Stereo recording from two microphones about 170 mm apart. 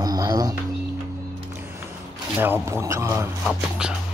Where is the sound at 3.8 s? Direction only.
5° right (ahead or behind).